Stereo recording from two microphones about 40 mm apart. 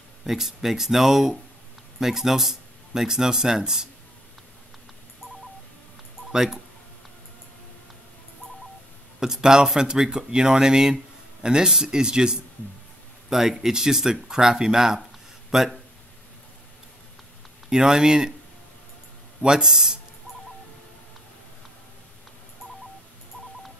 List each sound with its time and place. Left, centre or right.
0.2 s speech: centre
6.3 s speech: centre
9.2 s speech: centre
17.6 s speech: centre
19.4 s speech: centre